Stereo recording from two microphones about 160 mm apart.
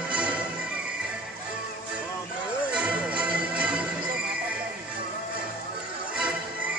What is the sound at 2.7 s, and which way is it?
Music, 5° right (ahead or behind).